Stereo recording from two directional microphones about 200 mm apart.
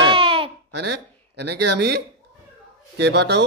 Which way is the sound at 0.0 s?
25° right (ahead or behind).